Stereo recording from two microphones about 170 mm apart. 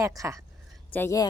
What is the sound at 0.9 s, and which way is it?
Speech, 15° left (ahead or behind).